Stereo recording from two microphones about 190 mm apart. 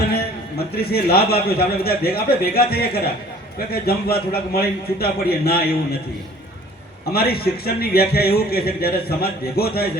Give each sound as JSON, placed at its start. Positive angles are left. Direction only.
{"t": 0.8, "sound": "a man's voice", "side_deg": 55}
{"t": 7.1, "sound": "a man's voice", "side_deg": 55}